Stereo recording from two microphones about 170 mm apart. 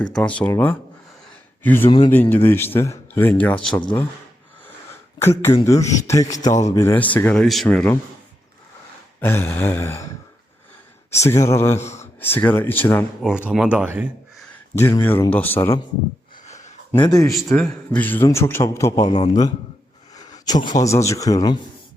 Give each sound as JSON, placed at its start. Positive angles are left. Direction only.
{"t": 0.0, "sound": "a man's voice", "side_deg": 5}
{"t": 5.2, "sound": "a man's voice", "side_deg": 15}
{"t": 9.2, "sound": "a man's voice", "side_deg": 15}
{"t": 11.2, "sound": "a man's voice", "side_deg": 15}
{"t": 13.5, "sound": "speech", "side_deg": -5}
{"t": 14.5, "sound": "a man's voice", "side_deg": 15}
{"t": 16.5, "sound": "a sound", "side_deg": 45}
{"t": 17.0, "sound": "speech", "side_deg": 20}
{"t": 17.3, "sound": "a man's voice", "side_deg": 5}
{"t": 19.0, "sound": "a man's voice", "side_deg": 40}
{"t": 20.1, "sound": "speech", "side_deg": 20}